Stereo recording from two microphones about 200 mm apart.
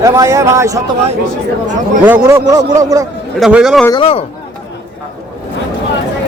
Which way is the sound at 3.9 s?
25° left (ahead or behind).